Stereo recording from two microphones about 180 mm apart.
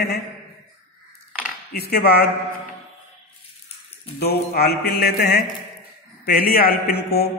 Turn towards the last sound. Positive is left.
turn(degrees=55)  # may be behind; listen again after turning